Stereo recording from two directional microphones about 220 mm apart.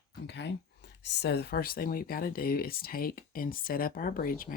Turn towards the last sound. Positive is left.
turn(degrees=40)  # may be behind; listen again after turning